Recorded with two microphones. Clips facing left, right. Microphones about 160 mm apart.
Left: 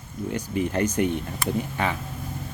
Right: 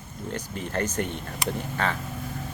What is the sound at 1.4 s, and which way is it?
Speech, 15° right (ahead or behind).